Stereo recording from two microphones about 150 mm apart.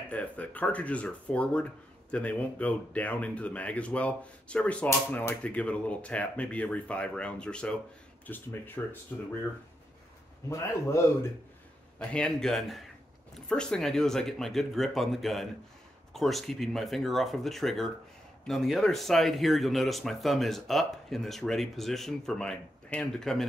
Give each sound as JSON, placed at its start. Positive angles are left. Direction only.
{"t": 0.1, "sound": "speech", "side_deg": 10}
{"t": 10.5, "sound": "a man's voice", "side_deg": 20}
{"t": 12.0, "sound": "speech", "side_deg": 5}